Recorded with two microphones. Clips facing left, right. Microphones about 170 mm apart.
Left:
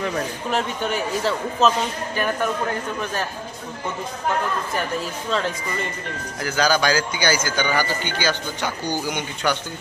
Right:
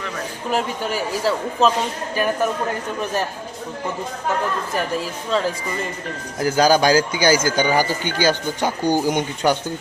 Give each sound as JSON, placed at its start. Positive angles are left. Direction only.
{"t": 0.5, "sound": "a man's voice", "side_deg": -5}
{"t": 6.4, "sound": "speech", "side_deg": -45}
{"t": 7.7, "sound": "speech", "side_deg": -15}
{"t": 8.0, "sound": "speech", "side_deg": -45}